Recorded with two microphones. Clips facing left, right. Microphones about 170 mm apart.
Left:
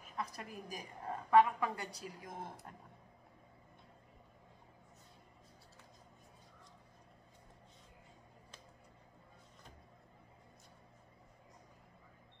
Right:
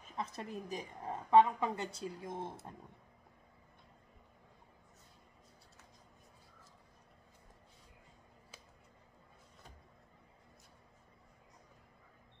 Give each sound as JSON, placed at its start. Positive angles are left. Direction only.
{"t": 0.0, "sound": "a woman's voice", "side_deg": -25}